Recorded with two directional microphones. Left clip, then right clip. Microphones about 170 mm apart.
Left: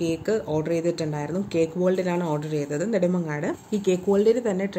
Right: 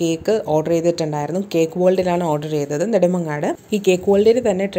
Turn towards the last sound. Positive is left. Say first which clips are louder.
# right 7 dB
turn(degrees=-15)  # may be behind; listen again after turning